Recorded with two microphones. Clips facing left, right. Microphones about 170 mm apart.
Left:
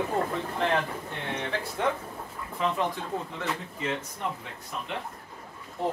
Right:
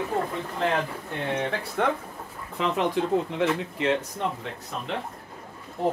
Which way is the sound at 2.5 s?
90° right.